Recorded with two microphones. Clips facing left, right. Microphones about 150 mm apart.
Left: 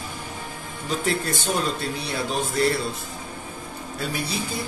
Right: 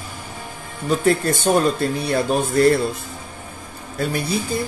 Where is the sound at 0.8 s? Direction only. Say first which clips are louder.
Right 8 dB; 50° right (ahead or behind).